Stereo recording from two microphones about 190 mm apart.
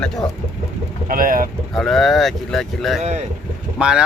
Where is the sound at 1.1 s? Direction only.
45° right (ahead or behind).